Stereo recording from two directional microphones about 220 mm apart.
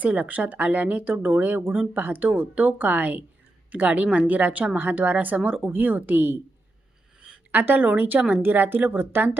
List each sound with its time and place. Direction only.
0.0 s speech: 5° right (ahead or behind)